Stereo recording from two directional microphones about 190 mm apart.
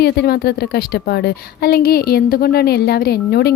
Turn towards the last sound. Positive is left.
turn(degrees=55)  # may be behind; listen again after turning